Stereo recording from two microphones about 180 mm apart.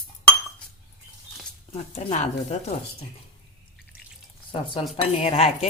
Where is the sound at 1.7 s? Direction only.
35° left (ahead or behind).